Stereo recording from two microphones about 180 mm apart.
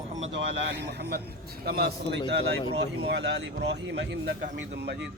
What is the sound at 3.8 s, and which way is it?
Speech, 85° right.